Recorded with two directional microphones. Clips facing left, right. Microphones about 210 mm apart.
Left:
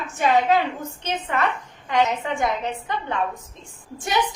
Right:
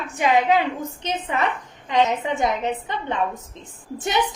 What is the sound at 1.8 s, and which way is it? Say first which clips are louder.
A woman's voice: right 1 dB; 20° right (ahead or behind).